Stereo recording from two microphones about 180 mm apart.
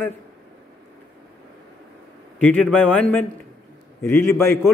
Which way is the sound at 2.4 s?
5° left (ahead or behind).